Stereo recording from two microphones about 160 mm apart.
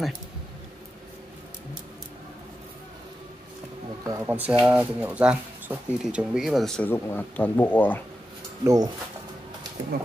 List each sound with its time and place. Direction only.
4.0 s speech: 20° right (ahead or behind)
4.4 s speech: 10° right (ahead or behind); by 8.0 s 10° left (ahead or behind)
8.6 s speech: 25° right (ahead or behind)